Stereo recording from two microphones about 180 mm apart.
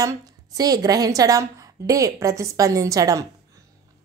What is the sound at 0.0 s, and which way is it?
Speech, 20° right (ahead or behind).